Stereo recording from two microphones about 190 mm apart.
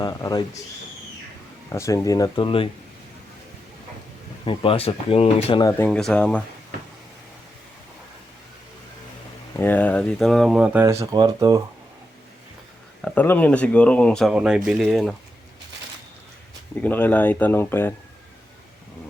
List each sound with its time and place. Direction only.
0.0 s speech: 20° left (ahead or behind)
1.7 s speech: 15° left (ahead or behind)
4.4 s speech: 30° left (ahead or behind)
5.6 s speech: 10° left (ahead or behind)
9.6 s speech: 10° left (ahead or behind); by 11.6 s 20° right (ahead or behind)
13.1 s speech: 10° left (ahead or behind)
16.8 s speech: 10° left (ahead or behind)